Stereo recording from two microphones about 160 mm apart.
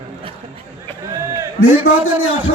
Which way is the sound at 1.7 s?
10° right (ahead or behind).